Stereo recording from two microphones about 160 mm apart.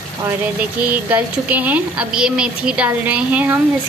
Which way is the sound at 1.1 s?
10° right (ahead or behind).